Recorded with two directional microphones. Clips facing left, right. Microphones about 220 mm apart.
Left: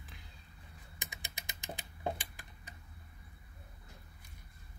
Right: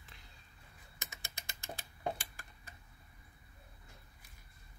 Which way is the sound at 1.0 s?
15° left (ahead or behind).